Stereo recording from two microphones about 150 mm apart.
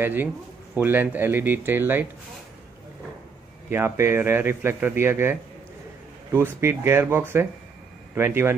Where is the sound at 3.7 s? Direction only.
15° right (ahead or behind).